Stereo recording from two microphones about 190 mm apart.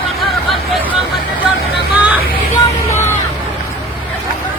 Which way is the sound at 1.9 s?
10° right (ahead or behind).